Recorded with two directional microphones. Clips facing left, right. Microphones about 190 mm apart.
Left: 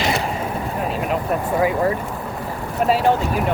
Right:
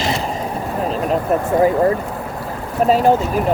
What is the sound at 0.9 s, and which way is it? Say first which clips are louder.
Speech: right 5 dB; 40° right (ahead or behind).